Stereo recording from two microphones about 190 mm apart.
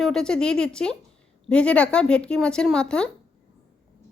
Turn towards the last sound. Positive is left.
turn(degrees=5)  # may be behind; listen again after turning